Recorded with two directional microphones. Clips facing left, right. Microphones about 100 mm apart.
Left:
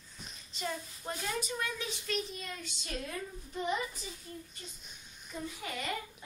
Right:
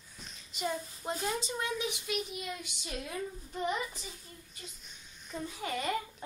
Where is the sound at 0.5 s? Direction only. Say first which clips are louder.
Right 3 dB; 15° right (ahead or behind).